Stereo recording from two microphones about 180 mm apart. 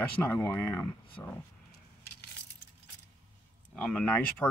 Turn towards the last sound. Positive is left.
turn(degrees=5)  # may be behind; listen again after turning